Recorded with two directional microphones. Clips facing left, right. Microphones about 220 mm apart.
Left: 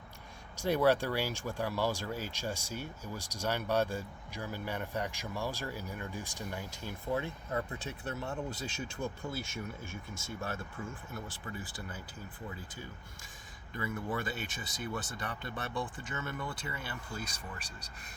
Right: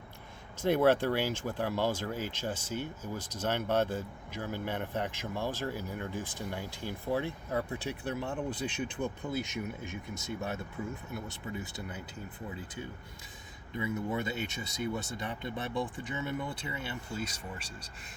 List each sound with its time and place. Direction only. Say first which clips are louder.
0.5 s speech: right 2 dB; 20° right (ahead or behind)